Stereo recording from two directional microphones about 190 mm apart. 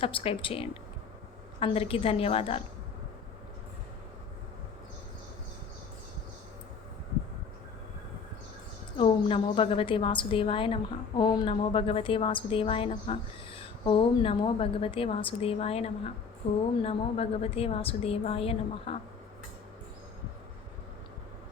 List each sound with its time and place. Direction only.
0.0 s a woman's voice: 30° left (ahead or behind)
9.0 s a woman's voice: 30° left (ahead or behind)